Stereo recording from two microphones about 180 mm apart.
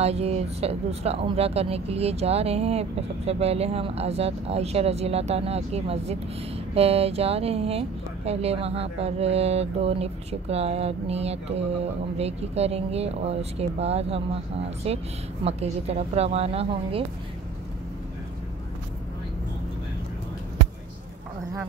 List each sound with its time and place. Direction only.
0.0 s speech: 35° right (ahead or behind)